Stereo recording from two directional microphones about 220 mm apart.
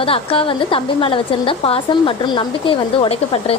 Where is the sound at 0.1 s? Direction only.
25° left (ahead or behind).